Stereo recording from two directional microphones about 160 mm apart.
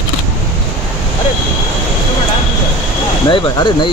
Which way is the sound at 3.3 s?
30° left (ahead or behind).